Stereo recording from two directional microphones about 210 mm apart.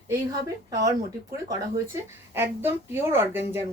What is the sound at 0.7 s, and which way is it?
Speech, 15° right (ahead or behind).